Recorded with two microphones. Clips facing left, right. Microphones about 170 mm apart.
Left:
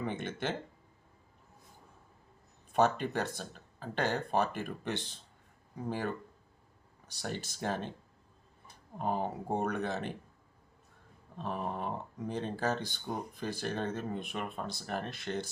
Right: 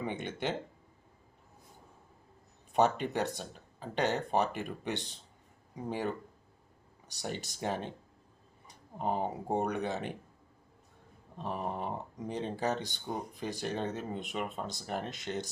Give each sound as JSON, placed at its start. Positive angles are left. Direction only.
{"t": 0.0, "sound": "speech", "side_deg": -15}
{"t": 2.7, "sound": "speech", "side_deg": -15}
{"t": 11.3, "sound": "speech", "side_deg": -15}